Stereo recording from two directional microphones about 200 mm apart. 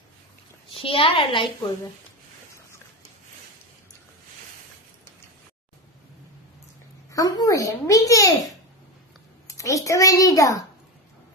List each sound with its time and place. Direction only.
0.7 s a woman's voice: 25° left (ahead or behind)
7.1 s a child's voice: 15° left (ahead or behind)
9.5 s a child's voice: 15° left (ahead or behind)